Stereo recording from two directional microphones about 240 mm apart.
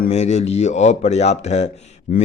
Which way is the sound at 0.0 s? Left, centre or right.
Left.